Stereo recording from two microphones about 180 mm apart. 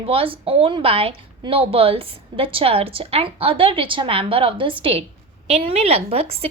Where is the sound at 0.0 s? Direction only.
30° right (ahead or behind).